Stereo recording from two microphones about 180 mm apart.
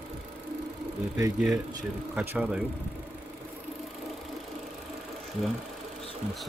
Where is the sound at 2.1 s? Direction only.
10° right (ahead or behind).